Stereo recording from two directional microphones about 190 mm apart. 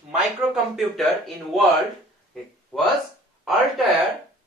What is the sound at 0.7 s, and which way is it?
Speech, centre (ahead or behind).